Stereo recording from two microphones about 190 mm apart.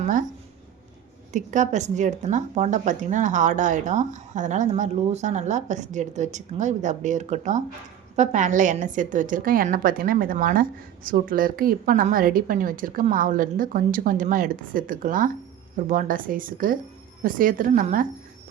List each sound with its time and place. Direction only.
0.0 s speech: 40° right (ahead or behind)
1.3 s a woman's voice: 40° right (ahead or behind)